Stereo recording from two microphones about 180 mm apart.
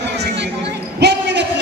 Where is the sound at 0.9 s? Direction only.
70° right (ahead or behind).